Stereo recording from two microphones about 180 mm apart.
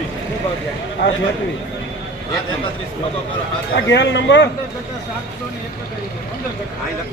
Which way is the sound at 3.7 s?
75° left (ahead or behind).